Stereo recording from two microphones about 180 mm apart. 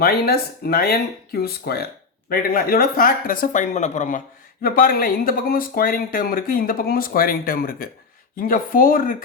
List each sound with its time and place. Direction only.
0.0 s speech: 60° left (ahead or behind); by 4.2 s 40° left (ahead or behind)
4.6 s speech: 55° left (ahead or behind)